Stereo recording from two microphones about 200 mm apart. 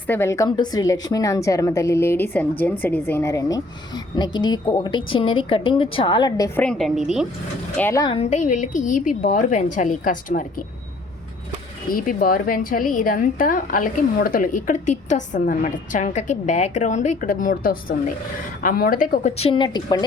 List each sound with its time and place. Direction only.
0.1 s a woman's voice: 15° left (ahead or behind)
6.7 s speech: centre (ahead or behind)
7.8 s a woman's voice: 15° left (ahead or behind)
8.1 s a woman's voice: 35° left (ahead or behind)
11.9 s a woman's voice: 45° left (ahead or behind); by 20.1 s 20° left (ahead or behind)